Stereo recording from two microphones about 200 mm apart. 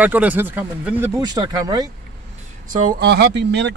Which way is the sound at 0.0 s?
10° right (ahead or behind).